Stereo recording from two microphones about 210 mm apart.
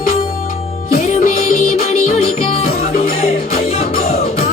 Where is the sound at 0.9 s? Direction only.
35° left (ahead or behind).